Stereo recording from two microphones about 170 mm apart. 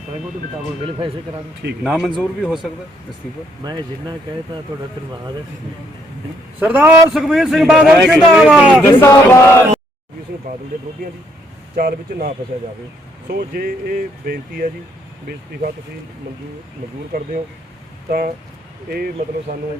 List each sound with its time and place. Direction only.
0.9 s speech: 30° right (ahead or behind)
1.8 s a man's voice: 5° right (ahead or behind)
3.6 s speech: 25° right (ahead or behind)
6.6 s a man's voice: 10° right (ahead or behind)
9.0 s speech: 15° left (ahead or behind)
11.8 s speech: 60° right (ahead or behind)
13.3 s speech: 60° right (ahead or behind)
18.9 s speech: 60° right (ahead or behind)